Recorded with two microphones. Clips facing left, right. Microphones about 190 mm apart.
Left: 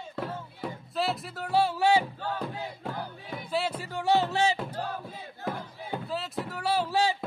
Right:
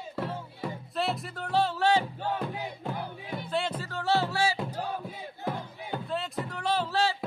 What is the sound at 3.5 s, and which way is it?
Music, 5° left (ahead or behind).